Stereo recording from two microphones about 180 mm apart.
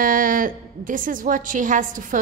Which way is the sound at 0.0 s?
50° right (ahead or behind).